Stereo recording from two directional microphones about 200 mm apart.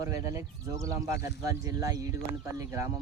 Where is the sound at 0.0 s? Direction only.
15° right (ahead or behind).